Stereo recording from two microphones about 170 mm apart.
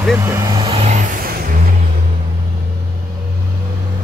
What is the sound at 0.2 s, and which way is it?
Speech, 15° right (ahead or behind).